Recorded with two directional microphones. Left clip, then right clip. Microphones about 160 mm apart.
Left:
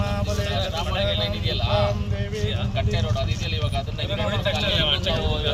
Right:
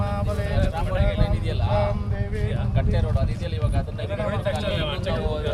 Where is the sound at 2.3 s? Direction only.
30° right (ahead or behind).